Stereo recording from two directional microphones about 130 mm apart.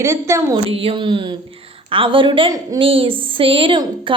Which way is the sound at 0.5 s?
45° right (ahead or behind).